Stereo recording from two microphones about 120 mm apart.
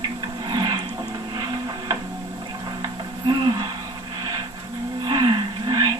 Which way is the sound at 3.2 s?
35° right (ahead or behind).